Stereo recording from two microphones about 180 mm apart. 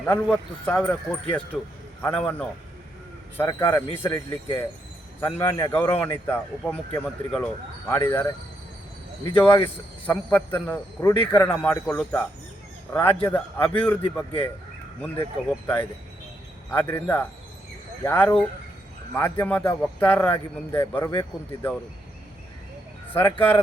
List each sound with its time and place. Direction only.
0.0 s speech: 10° left (ahead or behind)
9.4 s speech: 10° left (ahead or behind)
23.1 s speech: 10° left (ahead or behind)